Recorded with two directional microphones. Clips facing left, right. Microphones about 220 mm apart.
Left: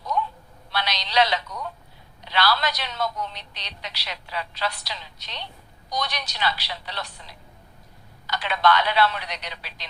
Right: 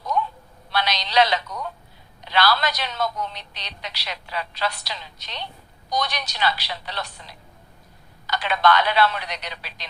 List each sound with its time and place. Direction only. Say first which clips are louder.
0.7 s a man's voice: right 3 dB; 50° right (ahead or behind)
8.3 s a woman's voice: right 2 dB; 45° right (ahead or behind)